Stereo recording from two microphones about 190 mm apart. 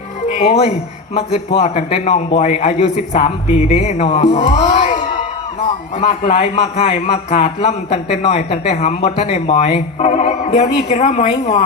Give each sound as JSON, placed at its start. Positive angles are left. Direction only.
{"t": 1.1, "sound": "a man's voice", "side_deg": 35}
{"t": 6.0, "sound": "a man's voice", "side_deg": 35}